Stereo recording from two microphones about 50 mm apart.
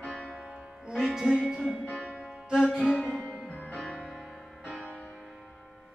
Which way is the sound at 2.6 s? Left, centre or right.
Centre.